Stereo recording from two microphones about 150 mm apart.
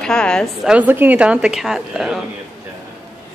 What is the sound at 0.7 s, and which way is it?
A woman's voice, 10° right (ahead or behind).